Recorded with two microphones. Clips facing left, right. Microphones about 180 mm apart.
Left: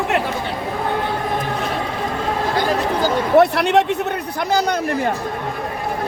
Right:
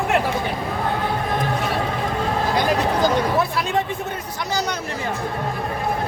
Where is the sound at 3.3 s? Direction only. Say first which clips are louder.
Left 8 dB; 75° left (ahead or behind).